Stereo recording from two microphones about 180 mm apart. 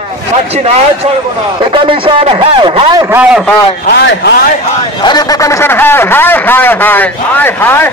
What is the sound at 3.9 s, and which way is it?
Speech, 70° left (ahead or behind).